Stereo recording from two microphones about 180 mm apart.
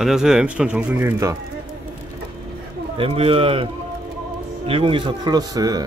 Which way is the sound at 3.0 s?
30° right (ahead or behind).